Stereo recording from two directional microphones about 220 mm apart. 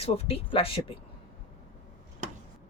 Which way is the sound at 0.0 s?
25° left (ahead or behind).